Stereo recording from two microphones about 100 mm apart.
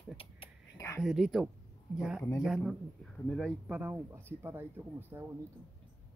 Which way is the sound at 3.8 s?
20° right (ahead or behind).